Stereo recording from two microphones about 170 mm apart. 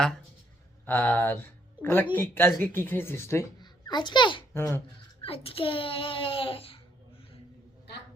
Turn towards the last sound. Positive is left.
turn(degrees=30)  # may be behind; listen again after turning